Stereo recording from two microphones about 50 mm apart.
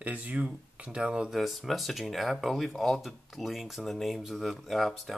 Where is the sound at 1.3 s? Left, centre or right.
Centre.